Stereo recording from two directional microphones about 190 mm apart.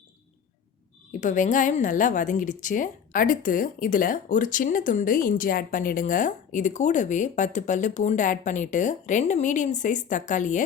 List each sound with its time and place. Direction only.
1.2 s a woman's voice: 40° left (ahead or behind)